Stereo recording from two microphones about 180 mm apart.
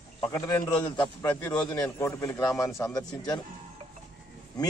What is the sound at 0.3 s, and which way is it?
A man's voice, 15° left (ahead or behind).